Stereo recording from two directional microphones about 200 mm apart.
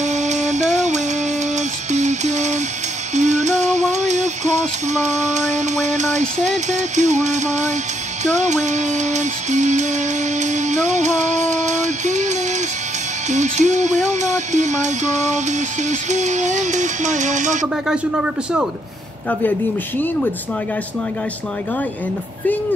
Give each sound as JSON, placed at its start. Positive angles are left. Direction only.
{"t": 0.0, "sound": "a sound", "side_deg": -35}
{"t": 1.9, "sound": "music", "side_deg": -35}
{"t": 17.8, "sound": "speech", "side_deg": -5}